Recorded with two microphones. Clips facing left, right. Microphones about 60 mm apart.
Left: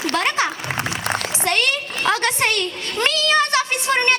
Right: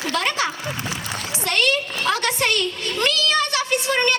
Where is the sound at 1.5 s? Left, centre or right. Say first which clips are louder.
Even; left.